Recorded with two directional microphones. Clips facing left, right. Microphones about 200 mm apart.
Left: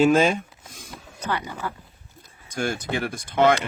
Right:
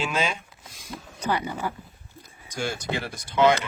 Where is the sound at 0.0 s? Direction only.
50° left (ahead or behind).